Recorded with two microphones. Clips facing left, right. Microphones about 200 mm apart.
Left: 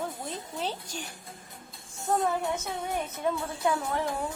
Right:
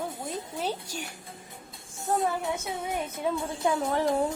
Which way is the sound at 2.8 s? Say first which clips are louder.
Even; 10° right (ahead or behind).